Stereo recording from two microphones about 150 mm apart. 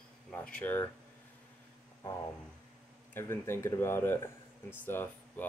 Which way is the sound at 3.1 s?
15° left (ahead or behind).